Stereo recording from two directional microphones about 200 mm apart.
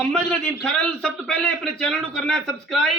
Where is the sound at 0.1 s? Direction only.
5° left (ahead or behind).